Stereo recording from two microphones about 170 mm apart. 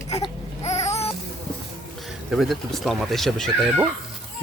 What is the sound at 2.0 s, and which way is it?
Speech, centre (ahead or behind).